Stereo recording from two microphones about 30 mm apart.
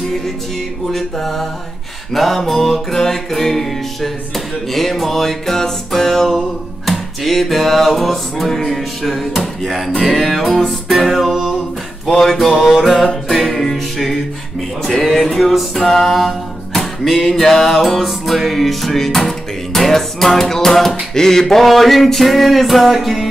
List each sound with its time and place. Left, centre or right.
0.9 s music: centre
11.2 s music: centre